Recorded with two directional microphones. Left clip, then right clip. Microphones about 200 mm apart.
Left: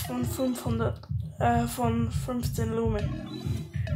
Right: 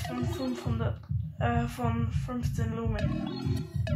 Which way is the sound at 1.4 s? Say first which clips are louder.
Left 5 dB; 35° left (ahead or behind).